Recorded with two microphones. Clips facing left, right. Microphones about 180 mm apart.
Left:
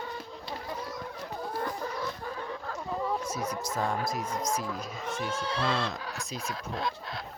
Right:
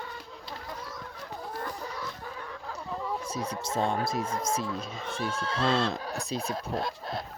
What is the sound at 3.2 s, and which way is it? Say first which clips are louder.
Speech: left 1 dB; 30° right (ahead or behind).